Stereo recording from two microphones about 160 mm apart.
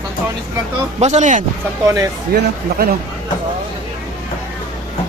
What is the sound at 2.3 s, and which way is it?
Speech, 80° right.